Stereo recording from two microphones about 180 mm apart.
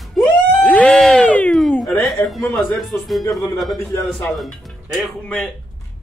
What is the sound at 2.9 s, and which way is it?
Speech, 10° left (ahead or behind).